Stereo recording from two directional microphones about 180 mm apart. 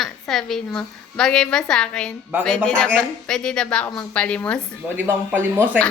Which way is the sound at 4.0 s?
5° left (ahead or behind).